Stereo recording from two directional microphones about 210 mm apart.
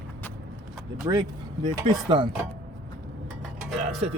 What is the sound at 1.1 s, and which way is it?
Speech, 20° right (ahead or behind).